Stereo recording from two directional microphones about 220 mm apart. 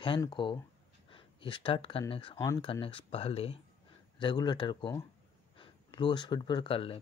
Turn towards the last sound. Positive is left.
turn(degrees=25)  # may be behind; listen again after turning